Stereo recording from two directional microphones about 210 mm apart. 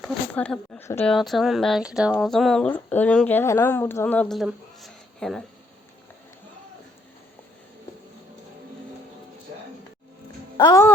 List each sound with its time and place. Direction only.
0.0 s speech: 5° left (ahead or behind)
10.6 s music: 15° left (ahead or behind)